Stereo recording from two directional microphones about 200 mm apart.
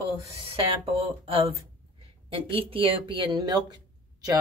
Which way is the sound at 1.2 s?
25° right (ahead or behind).